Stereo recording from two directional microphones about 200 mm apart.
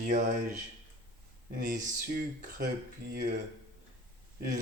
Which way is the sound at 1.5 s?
40° right (ahead or behind).